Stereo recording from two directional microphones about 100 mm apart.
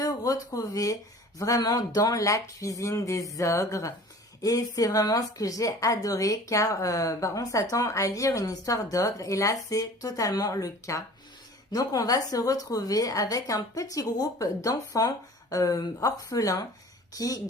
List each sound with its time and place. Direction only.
0.0 s a woman's voice: 35° left (ahead or behind)